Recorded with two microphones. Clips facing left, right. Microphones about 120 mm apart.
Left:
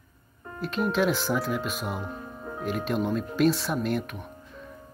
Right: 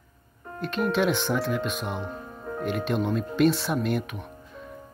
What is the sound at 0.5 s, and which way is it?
Speech, centre (ahead or behind).